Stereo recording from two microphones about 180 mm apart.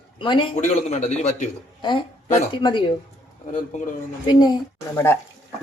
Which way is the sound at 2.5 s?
25° left (ahead or behind).